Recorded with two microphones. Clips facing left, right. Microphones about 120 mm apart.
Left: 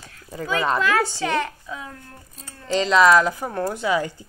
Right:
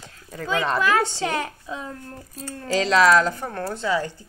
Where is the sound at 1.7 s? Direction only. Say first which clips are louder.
Right 2 dB; 25° right (ahead or behind).